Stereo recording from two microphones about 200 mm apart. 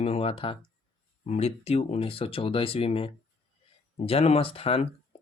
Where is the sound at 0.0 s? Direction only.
30° left (ahead or behind).